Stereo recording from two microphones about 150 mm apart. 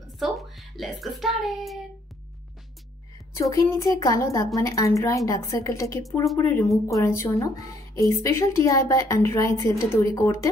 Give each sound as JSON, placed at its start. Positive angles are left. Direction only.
{"t": 0.2, "sound": "a child's voice", "side_deg": 0}
{"t": 3.3, "sound": "a woman's voice", "side_deg": 20}